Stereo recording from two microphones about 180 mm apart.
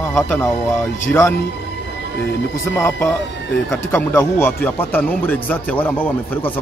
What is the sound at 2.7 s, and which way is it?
Speech, 15° left (ahead or behind).